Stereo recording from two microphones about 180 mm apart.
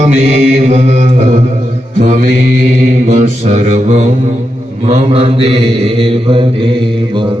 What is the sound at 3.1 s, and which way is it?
Mantra, 40° right (ahead or behind).